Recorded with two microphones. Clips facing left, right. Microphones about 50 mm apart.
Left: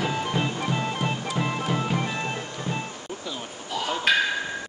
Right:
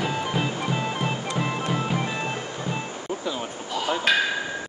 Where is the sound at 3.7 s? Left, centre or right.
Centre.